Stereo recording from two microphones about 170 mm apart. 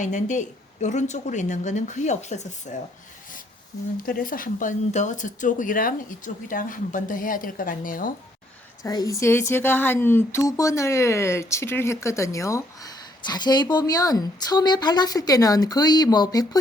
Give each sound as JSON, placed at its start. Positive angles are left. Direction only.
{"t": 0.0, "sound": "speech", "side_deg": 45}
{"t": 4.0, "sound": "speech", "side_deg": 55}
{"t": 8.8, "sound": "speech", "side_deg": 20}